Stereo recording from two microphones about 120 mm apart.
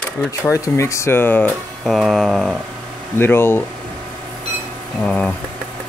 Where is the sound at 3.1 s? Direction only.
20° left (ahead or behind).